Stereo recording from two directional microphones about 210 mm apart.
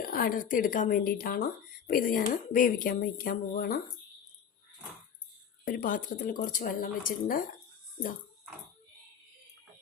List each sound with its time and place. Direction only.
0.0 s speech: 45° left (ahead or behind)
5.6 s speech: 40° left (ahead or behind)